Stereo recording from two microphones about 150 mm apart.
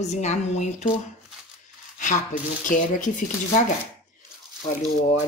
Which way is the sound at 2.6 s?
60° left (ahead or behind).